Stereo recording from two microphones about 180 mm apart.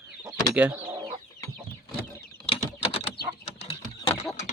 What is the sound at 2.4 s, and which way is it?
Typing, 35° left (ahead or behind).